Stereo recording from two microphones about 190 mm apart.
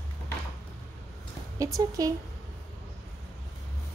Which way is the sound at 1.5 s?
15° right (ahead or behind).